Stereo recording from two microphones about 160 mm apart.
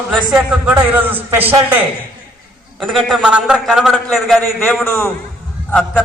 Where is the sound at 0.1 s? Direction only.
10° right (ahead or behind).